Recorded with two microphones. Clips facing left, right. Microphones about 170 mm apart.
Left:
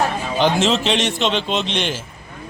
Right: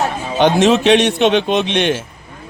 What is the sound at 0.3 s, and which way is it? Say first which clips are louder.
Speech: right 6 dB; 60° right (ahead or behind).